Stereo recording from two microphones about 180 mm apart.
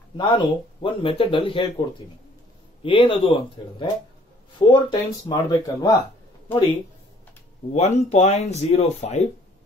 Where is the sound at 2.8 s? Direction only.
30° left (ahead or behind).